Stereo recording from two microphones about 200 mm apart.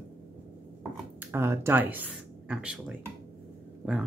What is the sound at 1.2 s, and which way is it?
Speech, 10° right (ahead or behind).